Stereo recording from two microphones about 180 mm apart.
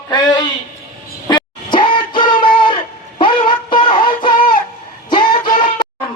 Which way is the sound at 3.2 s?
25° left (ahead or behind).